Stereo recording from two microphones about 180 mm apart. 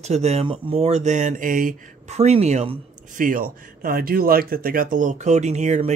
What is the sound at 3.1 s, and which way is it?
Speech, 50° right (ahead or behind).